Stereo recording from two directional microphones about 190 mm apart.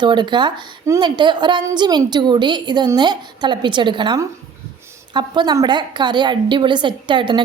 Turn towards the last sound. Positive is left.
turn(degrees=-25)  # may be behind; listen again after turning